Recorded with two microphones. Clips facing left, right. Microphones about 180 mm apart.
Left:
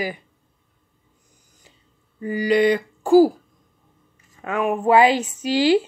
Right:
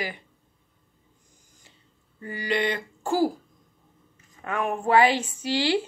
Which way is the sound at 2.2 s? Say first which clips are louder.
Left 9 dB; 15° left (ahead or behind).